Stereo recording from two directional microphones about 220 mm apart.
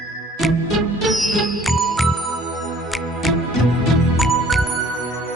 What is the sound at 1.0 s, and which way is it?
Music, centre (ahead or behind).